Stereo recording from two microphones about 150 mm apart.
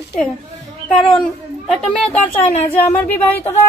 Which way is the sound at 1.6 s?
5° left (ahead or behind).